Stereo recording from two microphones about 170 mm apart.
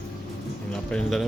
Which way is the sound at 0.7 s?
5° left (ahead or behind).